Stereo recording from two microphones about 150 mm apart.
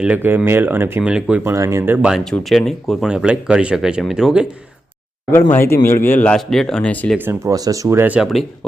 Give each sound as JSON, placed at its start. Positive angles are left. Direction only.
{"t": 0.0, "sound": "speech", "side_deg": -10}
{"t": 1.5, "sound": "speech", "side_deg": -20}
{"t": 5.3, "sound": "speech", "side_deg": 15}
{"t": 7.2, "sound": "speech", "side_deg": -20}